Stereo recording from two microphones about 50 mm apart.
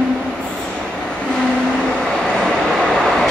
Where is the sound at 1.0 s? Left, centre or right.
Centre.